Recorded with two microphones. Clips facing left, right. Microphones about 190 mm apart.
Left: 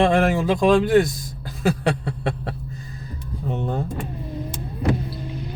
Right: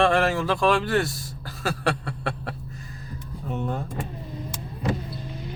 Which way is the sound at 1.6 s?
20° left (ahead or behind).